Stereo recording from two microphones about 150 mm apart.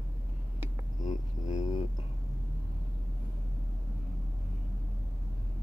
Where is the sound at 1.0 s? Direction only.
50° left (ahead or behind).